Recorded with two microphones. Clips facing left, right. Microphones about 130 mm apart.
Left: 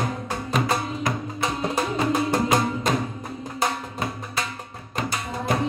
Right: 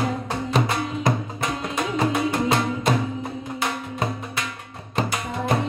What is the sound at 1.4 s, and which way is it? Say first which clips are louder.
Music: left 2 dB; 35° left (ahead or behind).